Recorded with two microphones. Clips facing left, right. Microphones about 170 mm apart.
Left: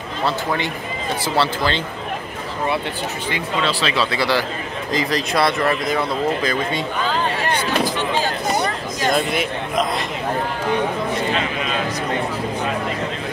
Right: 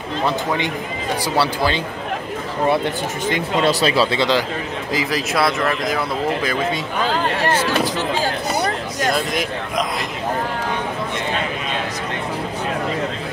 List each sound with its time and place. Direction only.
1.3 s speech: 10° right (ahead or behind)
3.3 s speech: 45° right (ahead or behind)
4.2 s speech: 20° right (ahead or behind)
4.9 s speech: 5° right (ahead or behind)
9.1 s speech: centre (ahead or behind)